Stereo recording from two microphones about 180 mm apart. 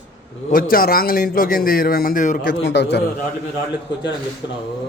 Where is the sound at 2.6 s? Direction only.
75° left (ahead or behind).